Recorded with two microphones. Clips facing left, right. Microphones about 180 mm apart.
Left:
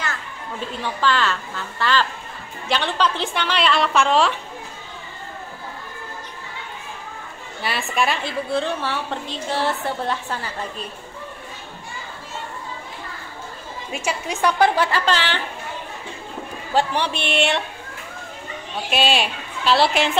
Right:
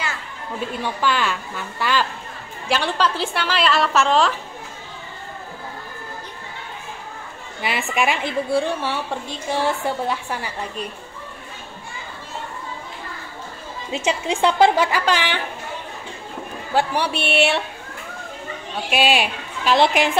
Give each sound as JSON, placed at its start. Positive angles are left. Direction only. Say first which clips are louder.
{"t": 1.0, "sound": "a woman's voice", "louder": "left 1 dB", "side_deg": -10}
{"t": 7.9, "sound": "a woman's voice", "louder": "right 1 dB", "side_deg": -15}
{"t": 13.9, "sound": "a woman's voice", "louder": "right 4 dB", "side_deg": -25}
{"t": 14.9, "sound": "a woman's voice", "louder": "right 1 dB", "side_deg": -10}
{"t": 16.7, "sound": "a woman's voice", "louder": "even", "side_deg": -10}
{"t": 18.9, "sound": "a woman's voice", "louder": "right 1 dB", "side_deg": -10}